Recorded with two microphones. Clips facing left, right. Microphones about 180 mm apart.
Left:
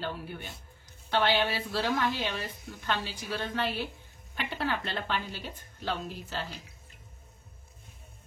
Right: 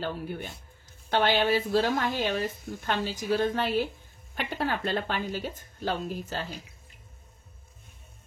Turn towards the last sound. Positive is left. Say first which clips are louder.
# right 4 dB
turn(degrees=-45)  # may be behind; listen again after turning